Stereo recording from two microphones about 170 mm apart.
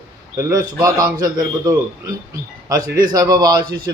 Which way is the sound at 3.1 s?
20° right (ahead or behind).